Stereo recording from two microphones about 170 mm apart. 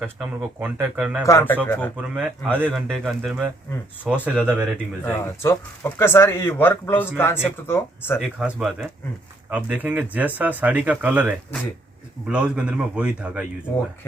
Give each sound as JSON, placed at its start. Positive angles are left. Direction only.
{"t": 0.0, "sound": "speech", "side_deg": -10}
{"t": 1.3, "sound": "speech", "side_deg": 15}
{"t": 2.0, "sound": "speech", "side_deg": -10}
{"t": 2.6, "sound": "speech", "side_deg": 0}
{"t": 5.0, "sound": "speech", "side_deg": 15}
{"t": 8.4, "sound": "speech", "side_deg": -5}